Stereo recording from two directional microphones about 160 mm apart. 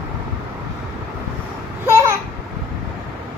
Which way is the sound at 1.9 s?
20° right (ahead or behind).